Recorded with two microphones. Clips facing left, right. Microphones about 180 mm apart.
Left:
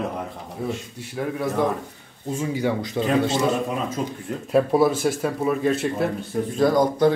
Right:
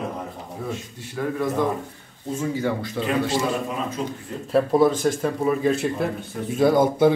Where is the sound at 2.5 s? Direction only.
15° left (ahead or behind).